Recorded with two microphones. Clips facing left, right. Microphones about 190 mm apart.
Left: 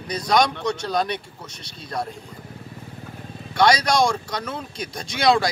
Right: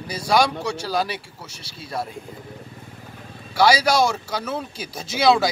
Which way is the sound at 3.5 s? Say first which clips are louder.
Right 1 dB; 5° right (ahead or behind).